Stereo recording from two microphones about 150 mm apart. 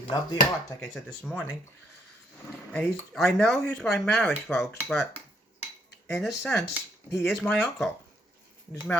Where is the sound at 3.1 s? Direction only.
Centre (ahead or behind).